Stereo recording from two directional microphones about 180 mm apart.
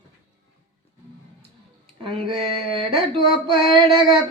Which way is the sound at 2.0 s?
30° right (ahead or behind).